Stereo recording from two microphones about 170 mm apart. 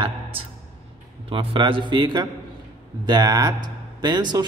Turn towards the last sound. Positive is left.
turn(degrees=-25)  # may be behind; listen again after turning